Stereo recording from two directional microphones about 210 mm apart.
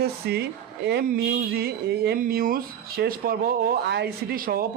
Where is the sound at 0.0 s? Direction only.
50° right (ahead or behind).